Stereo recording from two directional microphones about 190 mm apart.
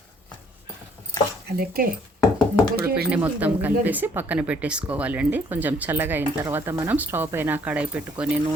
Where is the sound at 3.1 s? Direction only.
10° right (ahead or behind).